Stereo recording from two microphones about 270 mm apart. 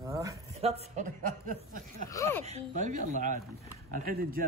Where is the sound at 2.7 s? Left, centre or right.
Right.